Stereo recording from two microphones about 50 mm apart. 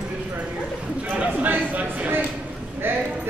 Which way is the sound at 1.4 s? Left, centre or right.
Right.